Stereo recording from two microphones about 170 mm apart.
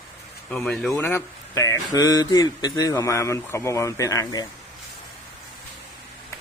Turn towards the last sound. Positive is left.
turn(degrees=20)  # may be behind; listen again after turning